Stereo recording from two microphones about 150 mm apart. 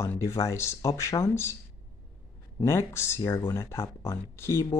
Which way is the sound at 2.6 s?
20° left (ahead or behind).